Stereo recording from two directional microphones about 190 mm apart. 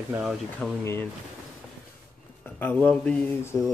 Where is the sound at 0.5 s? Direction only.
10° left (ahead or behind).